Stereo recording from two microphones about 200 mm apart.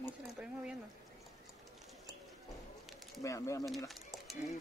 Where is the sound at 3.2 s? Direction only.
15° left (ahead or behind).